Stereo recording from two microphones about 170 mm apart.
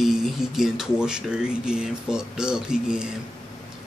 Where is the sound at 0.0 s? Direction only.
Centre (ahead or behind).